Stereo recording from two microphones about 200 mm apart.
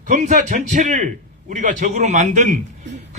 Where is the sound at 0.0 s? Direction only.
40° right (ahead or behind).